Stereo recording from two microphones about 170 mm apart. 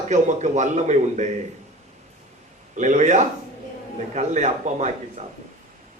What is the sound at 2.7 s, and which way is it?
A man's voice, 45° right (ahead or behind).